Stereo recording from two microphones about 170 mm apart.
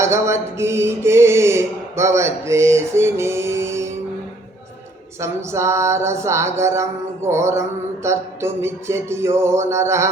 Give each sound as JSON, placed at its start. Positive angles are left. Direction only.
{"t": 0.0, "sound": "mantra", "side_deg": -15}
{"t": 5.2, "sound": "mantra", "side_deg": -15}